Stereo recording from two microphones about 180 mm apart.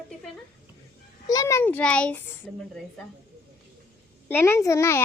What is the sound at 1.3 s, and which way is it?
A child's voice, 15° left (ahead or behind).